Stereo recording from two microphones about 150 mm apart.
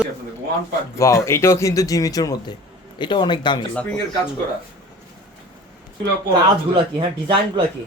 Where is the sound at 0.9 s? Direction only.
20° left (ahead or behind).